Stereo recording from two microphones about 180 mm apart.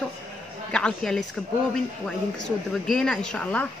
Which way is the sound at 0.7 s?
5° left (ahead or behind).